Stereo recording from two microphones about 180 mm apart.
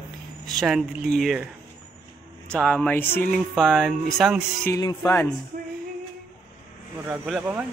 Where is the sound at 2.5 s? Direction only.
5° left (ahead or behind).